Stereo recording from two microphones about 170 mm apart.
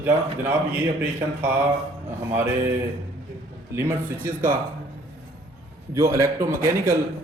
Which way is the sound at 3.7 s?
15° right (ahead or behind).